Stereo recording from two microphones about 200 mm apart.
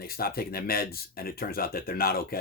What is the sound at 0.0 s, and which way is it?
Speech, 50° left (ahead or behind).